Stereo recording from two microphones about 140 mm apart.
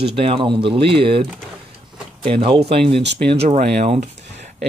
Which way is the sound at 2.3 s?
40° right (ahead or behind).